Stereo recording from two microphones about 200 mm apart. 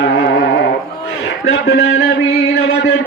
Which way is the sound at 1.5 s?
55° left (ahead or behind).